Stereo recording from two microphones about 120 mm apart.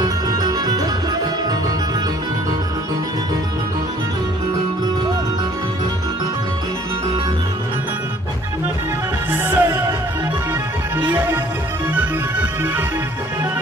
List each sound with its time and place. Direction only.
0.0 s music: 35° right (ahead or behind)
9.3 s music: 20° right (ahead or behind)
11.9 s music: 15° right (ahead or behind)